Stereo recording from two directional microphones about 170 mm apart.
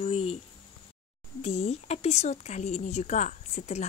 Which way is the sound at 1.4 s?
40° left (ahead or behind).